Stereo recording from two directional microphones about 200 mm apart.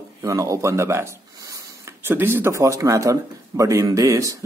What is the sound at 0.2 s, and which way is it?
Speech, 15° right (ahead or behind).